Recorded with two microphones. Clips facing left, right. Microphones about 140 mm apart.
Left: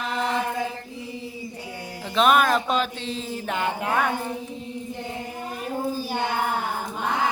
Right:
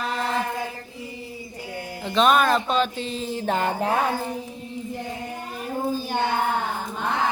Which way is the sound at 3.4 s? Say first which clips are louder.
Right 3 dB; 35° right (ahead or behind).